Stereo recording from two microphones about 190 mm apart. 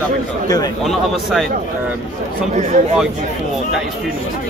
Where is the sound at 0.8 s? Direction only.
Centre (ahead or behind).